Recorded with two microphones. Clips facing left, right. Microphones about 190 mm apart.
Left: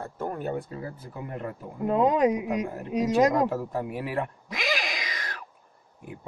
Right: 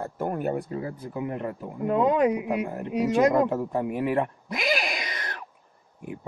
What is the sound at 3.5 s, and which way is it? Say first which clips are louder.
Speech: right 3 dB; 55° right (ahead or behind).